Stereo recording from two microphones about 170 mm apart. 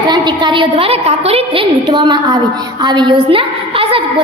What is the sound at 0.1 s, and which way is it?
A woman's voice, 25° right (ahead or behind).